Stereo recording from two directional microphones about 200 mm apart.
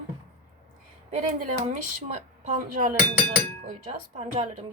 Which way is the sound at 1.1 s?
35° right (ahead or behind).